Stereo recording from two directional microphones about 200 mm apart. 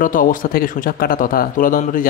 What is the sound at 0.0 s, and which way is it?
Speech, 45° left (ahead or behind).